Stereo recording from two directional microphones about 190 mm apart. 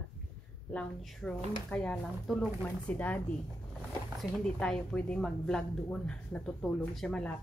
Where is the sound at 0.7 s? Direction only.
5° left (ahead or behind).